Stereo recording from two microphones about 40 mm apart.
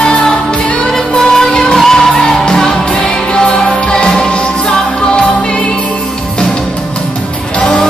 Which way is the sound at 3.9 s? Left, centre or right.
Centre.